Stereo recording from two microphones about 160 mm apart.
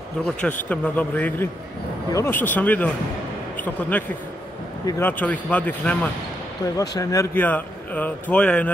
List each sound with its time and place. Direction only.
0.2 s a man's voice: 5° left (ahead or behind)
6.6 s speech: 25° left (ahead or behind)